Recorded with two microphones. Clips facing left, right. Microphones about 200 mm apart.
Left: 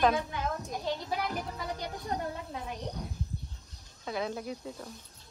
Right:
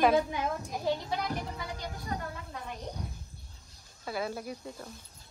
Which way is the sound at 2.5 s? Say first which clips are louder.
Left 2 dB; centre (ahead or behind).